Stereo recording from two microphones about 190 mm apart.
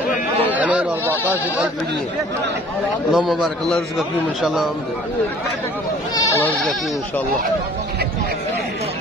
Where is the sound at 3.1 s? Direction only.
Centre (ahead or behind).